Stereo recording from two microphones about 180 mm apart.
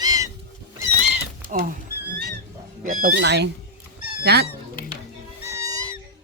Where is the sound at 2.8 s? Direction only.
50° right (ahead or behind).